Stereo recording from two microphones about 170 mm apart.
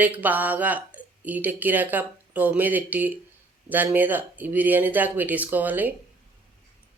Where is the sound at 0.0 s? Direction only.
10° right (ahead or behind).